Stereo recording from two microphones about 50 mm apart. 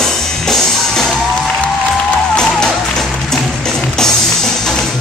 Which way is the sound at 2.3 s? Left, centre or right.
Centre.